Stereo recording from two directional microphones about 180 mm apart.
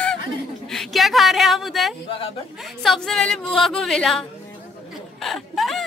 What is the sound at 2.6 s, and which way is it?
A woman's voice, centre (ahead or behind).